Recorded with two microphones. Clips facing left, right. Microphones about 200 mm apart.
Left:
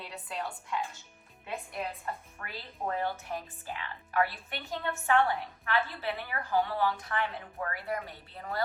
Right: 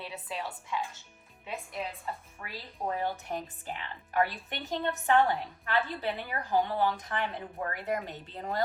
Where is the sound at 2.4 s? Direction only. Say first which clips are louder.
Right 1 dB; 10° right (ahead or behind).